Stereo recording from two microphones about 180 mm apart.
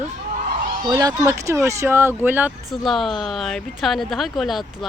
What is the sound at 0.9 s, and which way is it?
Speech, 20° right (ahead or behind).